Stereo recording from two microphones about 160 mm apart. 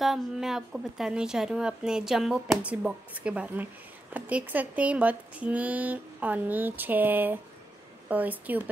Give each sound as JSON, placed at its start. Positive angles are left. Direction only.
{"t": 0.0, "sound": "a woman's voice", "side_deg": 0}